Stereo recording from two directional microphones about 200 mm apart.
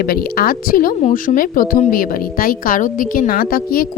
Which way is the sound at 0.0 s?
50° left (ahead or behind).